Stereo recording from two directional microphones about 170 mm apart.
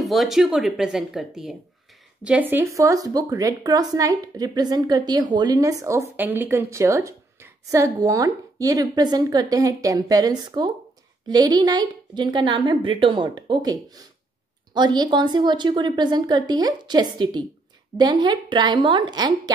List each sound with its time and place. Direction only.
0.0 s a woman's voice: centre (ahead or behind); by 19.5 s 25° right (ahead or behind)